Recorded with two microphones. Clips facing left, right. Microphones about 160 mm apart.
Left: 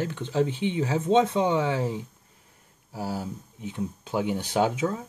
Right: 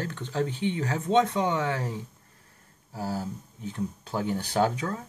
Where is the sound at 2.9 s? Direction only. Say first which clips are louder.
Even; 5° left (ahead or behind).